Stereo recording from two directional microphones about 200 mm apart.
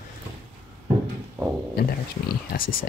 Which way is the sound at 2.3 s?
50° left (ahead or behind).